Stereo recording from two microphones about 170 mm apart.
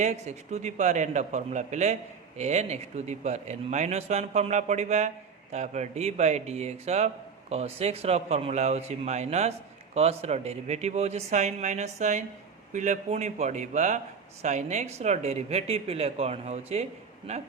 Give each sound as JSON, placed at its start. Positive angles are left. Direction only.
{"t": 0.0, "sound": "a man's voice", "side_deg": -40}